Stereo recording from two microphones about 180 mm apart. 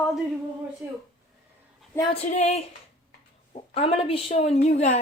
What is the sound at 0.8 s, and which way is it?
Speech, 15° right (ahead or behind).